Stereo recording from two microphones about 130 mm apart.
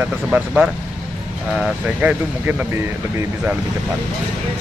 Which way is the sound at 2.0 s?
10° right (ahead or behind).